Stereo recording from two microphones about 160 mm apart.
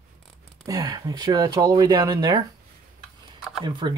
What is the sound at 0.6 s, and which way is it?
Speech, 25° right (ahead or behind).